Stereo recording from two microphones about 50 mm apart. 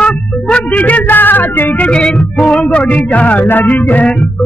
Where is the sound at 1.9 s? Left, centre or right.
Centre.